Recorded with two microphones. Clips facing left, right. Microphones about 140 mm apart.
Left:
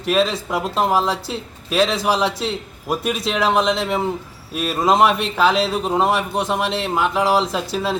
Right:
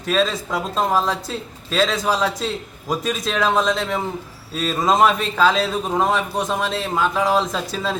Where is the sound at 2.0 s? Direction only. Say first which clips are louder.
Left 2 dB; 25° left (ahead or behind).